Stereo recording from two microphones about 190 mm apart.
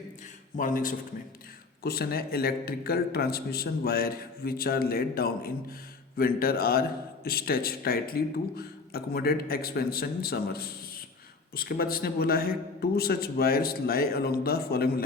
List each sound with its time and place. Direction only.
0.5 s a man's voice: 45° left (ahead or behind)